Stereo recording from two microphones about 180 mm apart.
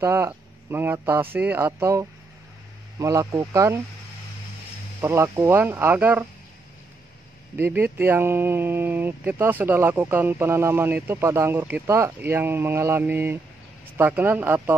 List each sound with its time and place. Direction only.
0.0 s speech: 15° right (ahead or behind)
5.0 s speech: 15° right (ahead or behind)
7.5 s speech: 10° right (ahead or behind)